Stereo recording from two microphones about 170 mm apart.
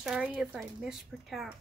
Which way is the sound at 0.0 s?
5° right (ahead or behind).